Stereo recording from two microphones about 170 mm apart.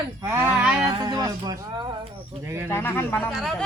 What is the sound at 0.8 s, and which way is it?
Speech, 20° right (ahead or behind).